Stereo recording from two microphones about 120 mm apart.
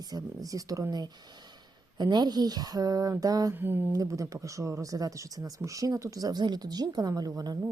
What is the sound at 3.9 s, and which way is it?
Speech, 25° right (ahead or behind).